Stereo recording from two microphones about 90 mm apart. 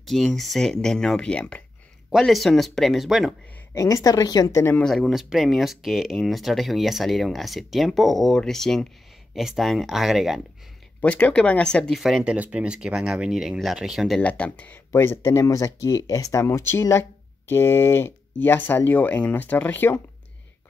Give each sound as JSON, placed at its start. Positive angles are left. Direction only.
{"t": 0.0, "sound": "speech", "side_deg": 5}
{"t": 2.0, "sound": "speech", "side_deg": 0}
{"t": 3.7, "sound": "speech", "side_deg": 40}
{"t": 4.5, "sound": "speech", "side_deg": 35}
{"t": 5.0, "sound": "speech", "side_deg": -5}
{"t": 11.0, "sound": "speech", "side_deg": 15}
{"t": 12.0, "sound": "speech", "side_deg": -5}
{"t": 14.2, "sound": "speech", "side_deg": 15}
{"t": 14.9, "sound": "speech", "side_deg": 25}